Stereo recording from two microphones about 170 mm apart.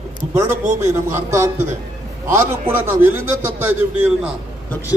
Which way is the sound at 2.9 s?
15° right (ahead or behind).